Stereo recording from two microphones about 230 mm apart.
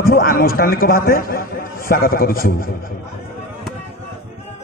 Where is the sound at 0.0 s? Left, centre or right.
Left.